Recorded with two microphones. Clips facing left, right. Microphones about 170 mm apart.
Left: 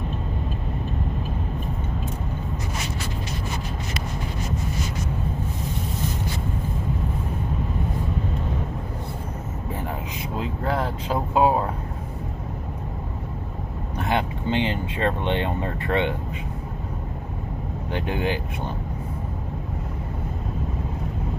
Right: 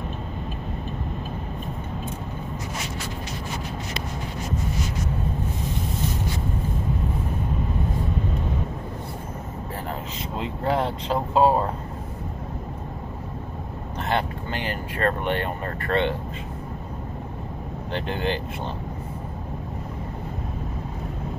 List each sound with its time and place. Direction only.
10.3 s speech: centre (ahead or behind)
13.9 s speech: 15° left (ahead or behind)
17.9 s speech: 10° left (ahead or behind)